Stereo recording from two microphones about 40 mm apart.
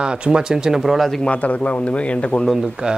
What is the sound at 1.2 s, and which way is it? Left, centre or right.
Speech, left.